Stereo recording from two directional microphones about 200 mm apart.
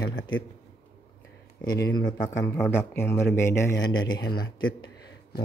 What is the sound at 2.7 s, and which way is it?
A man's voice, 10° left (ahead or behind).